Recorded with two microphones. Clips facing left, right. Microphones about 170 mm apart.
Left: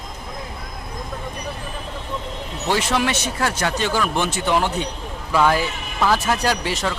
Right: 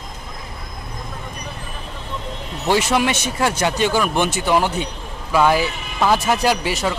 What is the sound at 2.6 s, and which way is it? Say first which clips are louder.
A man's voice: right 3 dB; 10° right (ahead or behind).